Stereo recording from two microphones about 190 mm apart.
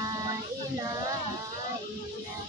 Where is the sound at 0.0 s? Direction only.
20° right (ahead or behind).